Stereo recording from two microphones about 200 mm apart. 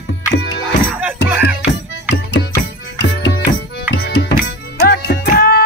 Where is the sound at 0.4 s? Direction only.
60° left (ahead or behind).